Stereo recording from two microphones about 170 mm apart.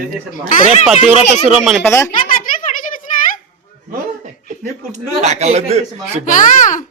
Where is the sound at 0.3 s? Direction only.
55° left (ahead or behind).